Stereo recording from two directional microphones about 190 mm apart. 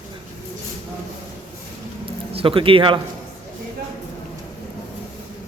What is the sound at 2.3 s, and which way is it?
Speech, 30° right (ahead or behind).